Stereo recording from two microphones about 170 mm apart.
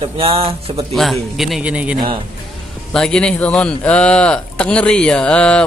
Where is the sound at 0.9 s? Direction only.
Centre (ahead or behind).